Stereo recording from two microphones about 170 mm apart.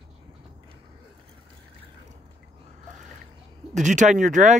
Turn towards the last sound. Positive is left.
turn(degrees=-45)  # may be behind; listen again after turning